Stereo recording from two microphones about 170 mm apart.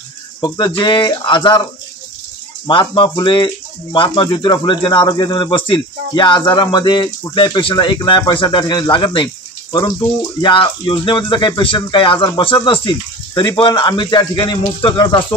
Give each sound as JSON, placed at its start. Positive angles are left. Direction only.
{"t": 0.4, "sound": "speech", "side_deg": 25}